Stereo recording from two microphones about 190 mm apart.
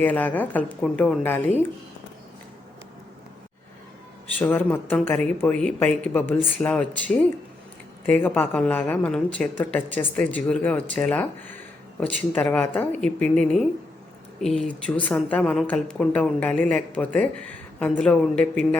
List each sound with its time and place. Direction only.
0.0 s a woman's voice: 10° left (ahead or behind)
4.4 s a woman's voice: 10° left (ahead or behind)